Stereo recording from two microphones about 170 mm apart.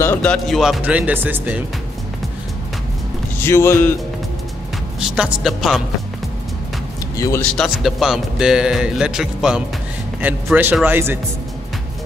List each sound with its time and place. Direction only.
0.0 s speech: 10° left (ahead or behind); by 1.6 s 10° right (ahead or behind)
3.3 s speech: 15° left (ahead or behind)
5.1 s speech: 5° right (ahead or behind)
7.2 s speech: 20° left (ahead or behind)
7.4 s speech: centre (ahead or behind)